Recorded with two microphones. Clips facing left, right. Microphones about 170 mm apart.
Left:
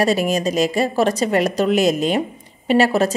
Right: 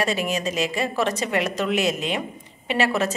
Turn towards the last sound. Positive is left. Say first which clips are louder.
# left 7 dB
turn(degrees=35)  # may be behind; listen again after turning